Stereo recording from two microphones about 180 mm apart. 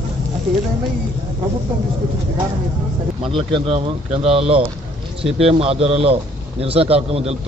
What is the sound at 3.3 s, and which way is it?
A man's voice, 30° right (ahead or behind).